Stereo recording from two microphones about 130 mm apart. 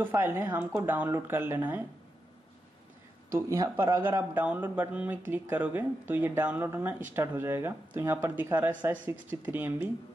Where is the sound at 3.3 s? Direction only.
25° right (ahead or behind).